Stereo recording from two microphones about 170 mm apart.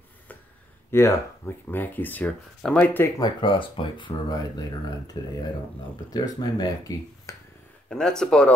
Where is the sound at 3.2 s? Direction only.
30° left (ahead or behind).